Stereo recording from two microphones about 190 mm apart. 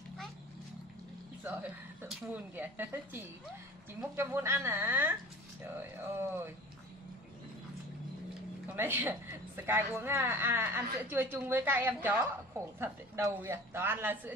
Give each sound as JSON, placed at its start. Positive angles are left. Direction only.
{"t": 1.4, "sound": "speech", "side_deg": -10}
{"t": 8.6, "sound": "speech", "side_deg": -10}